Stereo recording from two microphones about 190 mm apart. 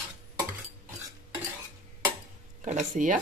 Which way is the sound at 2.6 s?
40° right (ahead or behind).